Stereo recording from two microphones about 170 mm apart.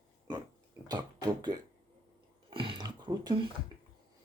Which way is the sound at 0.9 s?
25° right (ahead or behind).